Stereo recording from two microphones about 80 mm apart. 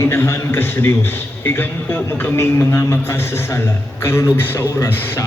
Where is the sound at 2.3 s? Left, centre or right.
Left.